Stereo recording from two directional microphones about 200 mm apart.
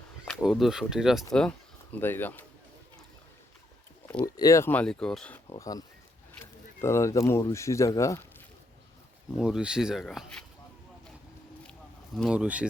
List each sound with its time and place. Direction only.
0.3 s speech: centre (ahead or behind)
4.0 s a sound: 5° left (ahead or behind)
4.4 s speech: 15° left (ahead or behind)
5.5 s speech: 15° left (ahead or behind)
9.4 s speech: 5° right (ahead or behind)
12.1 s speech: centre (ahead or behind)